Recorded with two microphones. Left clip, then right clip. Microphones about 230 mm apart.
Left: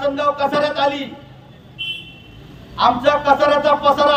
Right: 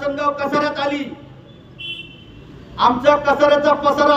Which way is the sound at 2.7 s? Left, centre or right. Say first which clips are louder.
Right 1 dB; centre.